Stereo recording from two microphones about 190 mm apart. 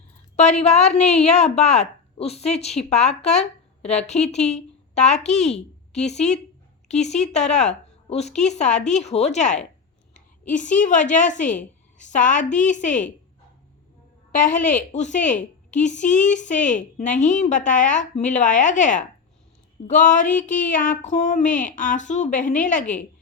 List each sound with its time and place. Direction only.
0.3 s a woman's voice: 35° left (ahead or behind)
14.3 s a woman's voice: 40° left (ahead or behind)